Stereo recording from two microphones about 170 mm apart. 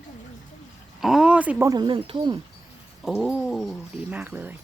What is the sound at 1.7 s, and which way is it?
Speech, 25° right (ahead or behind).